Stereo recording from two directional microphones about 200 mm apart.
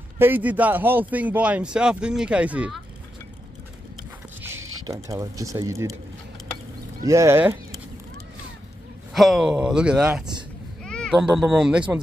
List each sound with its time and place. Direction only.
0.2 s speech: 10° right (ahead or behind)
4.8 s speech: 15° right (ahead or behind)
7.0 s speech: 15° right (ahead or behind)
9.1 s speech: centre (ahead or behind)